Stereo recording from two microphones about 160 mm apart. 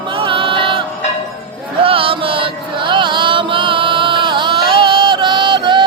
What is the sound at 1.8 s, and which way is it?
Chant, 35° right (ahead or behind).